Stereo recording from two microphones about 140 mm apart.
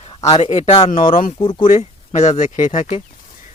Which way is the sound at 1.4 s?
35° left (ahead or behind).